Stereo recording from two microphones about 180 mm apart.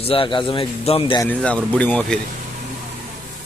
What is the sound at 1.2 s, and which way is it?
Speech, 5° left (ahead or behind).